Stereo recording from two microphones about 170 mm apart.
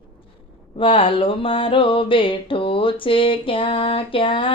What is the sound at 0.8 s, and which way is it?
Music, 30° left (ahead or behind).